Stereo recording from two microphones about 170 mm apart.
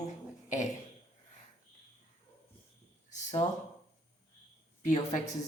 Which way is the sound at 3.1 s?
45° left (ahead or behind).